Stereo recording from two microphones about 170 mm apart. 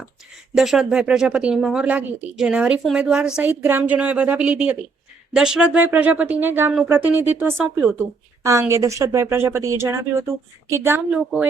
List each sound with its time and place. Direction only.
0.5 s speech: centre (ahead or behind)